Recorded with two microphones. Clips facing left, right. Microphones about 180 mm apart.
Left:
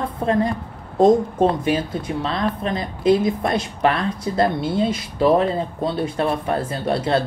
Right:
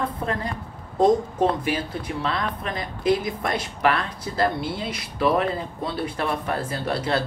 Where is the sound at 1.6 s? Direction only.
25° left (ahead or behind).